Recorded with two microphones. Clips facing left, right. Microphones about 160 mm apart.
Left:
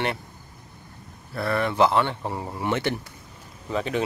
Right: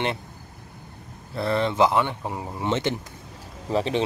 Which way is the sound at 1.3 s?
20° right (ahead or behind).